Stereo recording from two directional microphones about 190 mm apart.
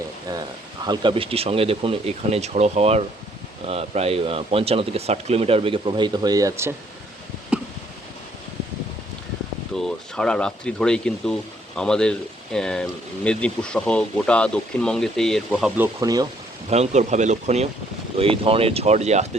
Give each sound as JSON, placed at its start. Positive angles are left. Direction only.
{"t": 0.9, "sound": "speech", "side_deg": -25}
{"t": 7.5, "sound": "a sound", "side_deg": -5}
{"t": 9.7, "sound": "speech", "side_deg": 5}
{"t": 15.8, "sound": "speech", "side_deg": -20}
{"t": 16.6, "sound": "speech", "side_deg": -35}